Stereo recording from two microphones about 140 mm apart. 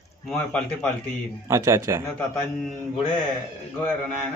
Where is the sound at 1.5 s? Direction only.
20° right (ahead or behind).